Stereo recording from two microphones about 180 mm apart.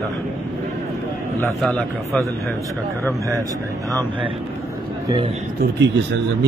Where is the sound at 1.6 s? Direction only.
5° left (ahead or behind).